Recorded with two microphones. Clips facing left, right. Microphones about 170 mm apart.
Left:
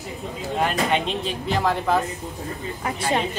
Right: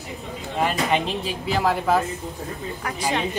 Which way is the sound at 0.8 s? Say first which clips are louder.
Even; centre (ahead or behind).